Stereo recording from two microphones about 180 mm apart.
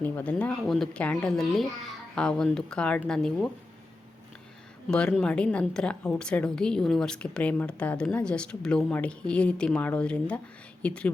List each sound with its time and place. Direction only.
0.0 s a woman's voice: 10° left (ahead or behind)
4.9 s a woman's voice: 5° left (ahead or behind)